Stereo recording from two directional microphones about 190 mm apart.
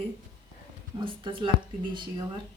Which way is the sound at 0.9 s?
25° right (ahead or behind).